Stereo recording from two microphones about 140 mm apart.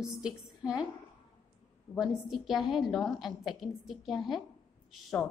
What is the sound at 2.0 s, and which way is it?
A woman's voice, centre (ahead or behind).